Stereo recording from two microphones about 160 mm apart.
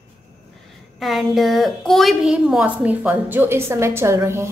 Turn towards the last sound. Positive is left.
turn(degrees=-15)  # may be behind; listen again after turning